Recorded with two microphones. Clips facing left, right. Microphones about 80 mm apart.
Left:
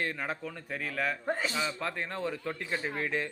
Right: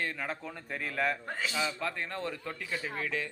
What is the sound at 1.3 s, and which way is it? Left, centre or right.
Speech, left.